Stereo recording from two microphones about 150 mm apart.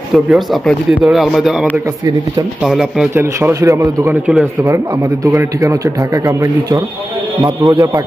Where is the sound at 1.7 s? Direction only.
25° right (ahead or behind).